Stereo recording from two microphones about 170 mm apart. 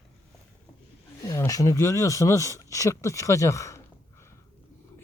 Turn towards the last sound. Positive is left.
turn(degrees=15)  # may be behind; listen again after turning